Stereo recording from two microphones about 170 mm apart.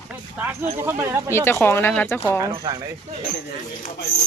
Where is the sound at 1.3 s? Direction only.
15° left (ahead or behind).